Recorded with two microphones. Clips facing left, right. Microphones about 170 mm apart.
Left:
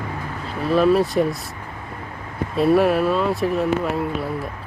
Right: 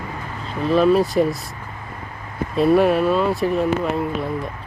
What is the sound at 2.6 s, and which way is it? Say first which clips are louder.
Speech: right 1 dB; centre (ahead or behind).